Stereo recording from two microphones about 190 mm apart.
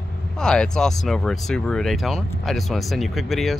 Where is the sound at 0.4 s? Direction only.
5° left (ahead or behind).